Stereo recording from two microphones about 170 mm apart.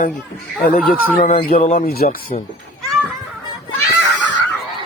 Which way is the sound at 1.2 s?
55° left (ahead or behind).